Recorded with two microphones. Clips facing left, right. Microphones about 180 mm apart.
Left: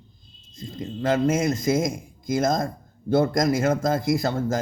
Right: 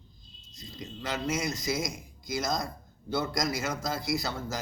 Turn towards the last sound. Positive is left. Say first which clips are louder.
# left 9 dB
turn(degrees=50)  # may be behind; listen again after turning